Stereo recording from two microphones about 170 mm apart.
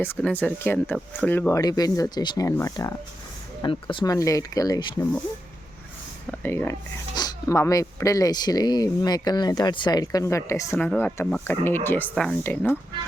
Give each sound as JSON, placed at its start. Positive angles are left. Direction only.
{"t": 0.0, "sound": "speech", "side_deg": 10}
{"t": 3.6, "sound": "speech", "side_deg": 30}
{"t": 6.4, "sound": "speech", "side_deg": 10}